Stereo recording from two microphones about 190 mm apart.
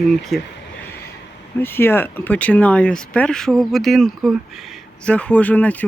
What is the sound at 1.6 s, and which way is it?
Speech, 10° left (ahead or behind).